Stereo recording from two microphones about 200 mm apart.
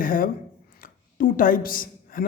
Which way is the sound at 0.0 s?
45° left (ahead or behind).